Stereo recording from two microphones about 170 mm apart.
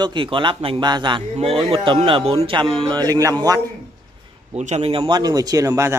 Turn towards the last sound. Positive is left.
turn(degrees=-15)  # may be behind; listen again after turning